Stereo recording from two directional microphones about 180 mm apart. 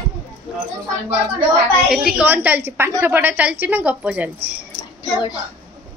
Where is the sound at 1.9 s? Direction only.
5° right (ahead or behind).